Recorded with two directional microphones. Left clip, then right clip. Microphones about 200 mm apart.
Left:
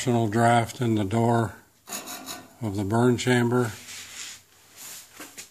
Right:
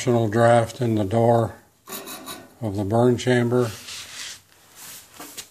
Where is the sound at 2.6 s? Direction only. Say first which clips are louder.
Right 4 dB; 15° left (ahead or behind).